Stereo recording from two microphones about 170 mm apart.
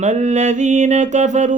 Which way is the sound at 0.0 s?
45° right (ahead or behind).